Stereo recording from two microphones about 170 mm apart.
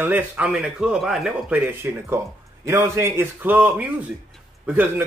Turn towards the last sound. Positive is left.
turn(degrees=-10)  # may be behind; listen again after turning